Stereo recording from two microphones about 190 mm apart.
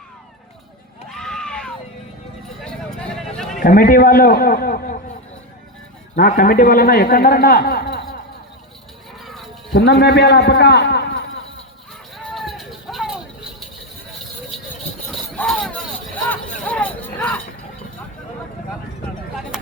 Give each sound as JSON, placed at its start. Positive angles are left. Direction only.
{"t": 1.0, "sound": "screaming", "side_deg": 5}
{"t": 2.6, "sound": "a sound", "side_deg": 5}
{"t": 3.6, "sound": "a man's voice", "side_deg": 50}
{"t": 6.1, "sound": "a man's voice", "side_deg": 50}
{"t": 9.2, "sound": "music", "side_deg": 0}
{"t": 9.7, "sound": "a man's voice", "side_deg": 60}
{"t": 12.1, "sound": "music", "side_deg": 0}
{"t": 14.5, "sound": "vehicle", "side_deg": 0}
{"t": 15.4, "sound": "a sound", "side_deg": 5}